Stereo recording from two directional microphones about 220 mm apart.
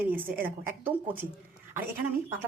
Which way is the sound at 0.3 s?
10° right (ahead or behind).